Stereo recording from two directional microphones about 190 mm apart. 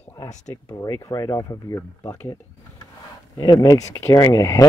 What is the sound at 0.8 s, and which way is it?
Speech, 15° left (ahead or behind).